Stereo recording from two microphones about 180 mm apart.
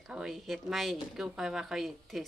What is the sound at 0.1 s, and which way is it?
A woman's voice, centre (ahead or behind).